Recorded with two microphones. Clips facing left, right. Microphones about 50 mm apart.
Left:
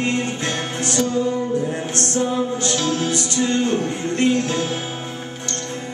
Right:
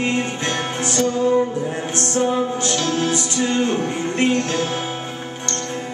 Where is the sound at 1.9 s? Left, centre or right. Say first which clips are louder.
Right 3 dB; right.